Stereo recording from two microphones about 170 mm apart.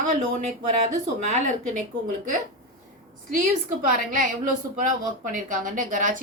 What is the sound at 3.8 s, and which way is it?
Speech, 50° right (ahead or behind).